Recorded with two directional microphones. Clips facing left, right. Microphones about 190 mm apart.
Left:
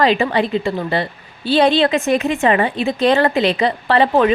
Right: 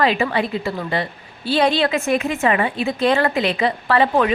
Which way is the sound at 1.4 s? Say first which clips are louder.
Left 4 dB; 25° left (ahead or behind).